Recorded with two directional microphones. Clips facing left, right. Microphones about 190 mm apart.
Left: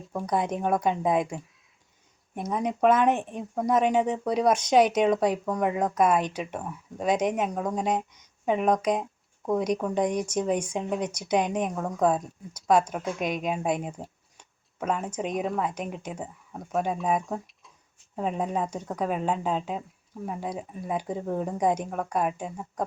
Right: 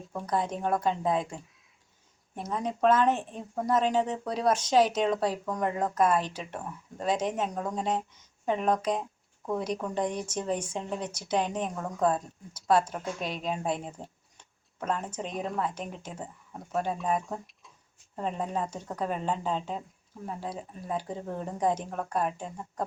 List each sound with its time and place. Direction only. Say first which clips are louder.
0.1 s speech: left 3 dB; 15° left (ahead or behind)